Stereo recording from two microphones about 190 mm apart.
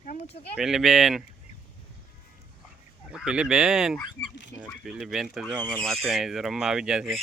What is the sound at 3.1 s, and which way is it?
Speech, 5° right (ahead or behind).